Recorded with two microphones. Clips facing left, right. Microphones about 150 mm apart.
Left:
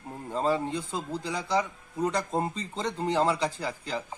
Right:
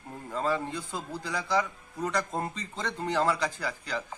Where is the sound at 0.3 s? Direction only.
30° left (ahead or behind).